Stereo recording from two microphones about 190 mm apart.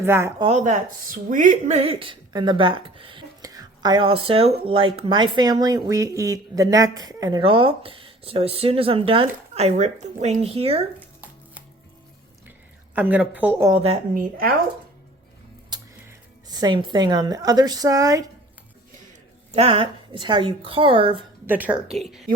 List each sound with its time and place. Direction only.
0.0 s speech: 15° right (ahead or behind)
0.4 s speech: 40° right (ahead or behind)
12.5 s speech: 10° right (ahead or behind)
13.7 s a woman's voice: 30° right (ahead or behind)
14.1 s speech: 50° right (ahead or behind)
15.7 s speech: 20° right (ahead or behind)
19.5 s speech: 30° right (ahead or behind)
21.4 s a woman's voice: 10° right (ahead or behind)